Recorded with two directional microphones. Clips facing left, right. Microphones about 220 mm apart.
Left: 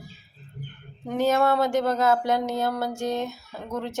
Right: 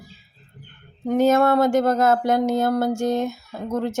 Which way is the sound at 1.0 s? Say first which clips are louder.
Right 5 dB; 45° right (ahead or behind).